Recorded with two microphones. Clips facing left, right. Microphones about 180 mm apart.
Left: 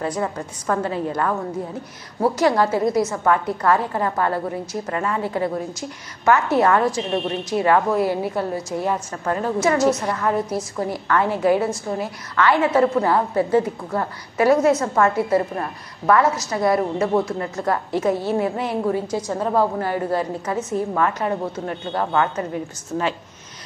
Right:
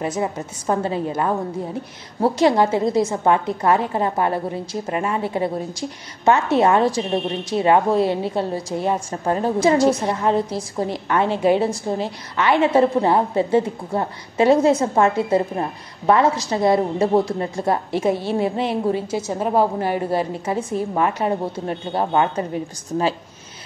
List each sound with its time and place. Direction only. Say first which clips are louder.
0.0 s a woman's voice: right 1 dB; 20° right (ahead or behind)